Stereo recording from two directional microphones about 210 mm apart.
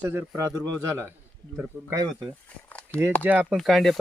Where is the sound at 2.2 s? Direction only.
5° left (ahead or behind).